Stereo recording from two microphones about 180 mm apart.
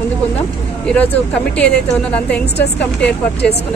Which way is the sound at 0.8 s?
5° left (ahead or behind).